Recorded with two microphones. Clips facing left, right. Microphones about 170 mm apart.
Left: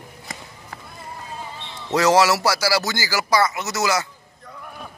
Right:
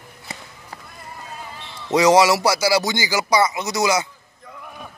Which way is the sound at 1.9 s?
15° right (ahead or behind).